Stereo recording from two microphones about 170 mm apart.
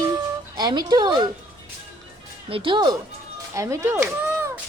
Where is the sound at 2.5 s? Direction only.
30° right (ahead or behind).